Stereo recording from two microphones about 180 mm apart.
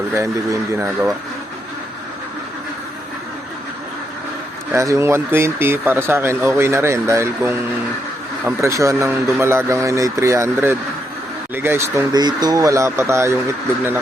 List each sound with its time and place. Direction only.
0.1 s speech: 15° right (ahead or behind)
4.7 s speech: 15° right (ahead or behind)